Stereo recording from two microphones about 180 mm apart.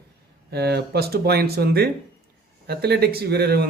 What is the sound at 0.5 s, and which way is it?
Speech, 65° right (ahead or behind).